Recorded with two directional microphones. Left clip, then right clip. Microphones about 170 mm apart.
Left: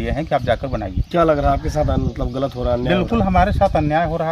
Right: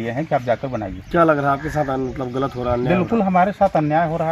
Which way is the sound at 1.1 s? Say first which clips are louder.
Even; 35° left (ahead or behind).